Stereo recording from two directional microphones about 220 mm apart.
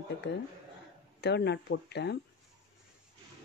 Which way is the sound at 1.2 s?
50° left (ahead or behind).